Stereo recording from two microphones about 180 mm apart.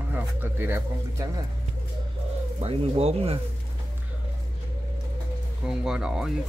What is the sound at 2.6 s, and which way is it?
Speech, 35° right (ahead or behind).